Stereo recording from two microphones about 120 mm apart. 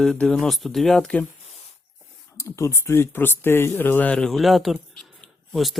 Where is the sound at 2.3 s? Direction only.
25° left (ahead or behind).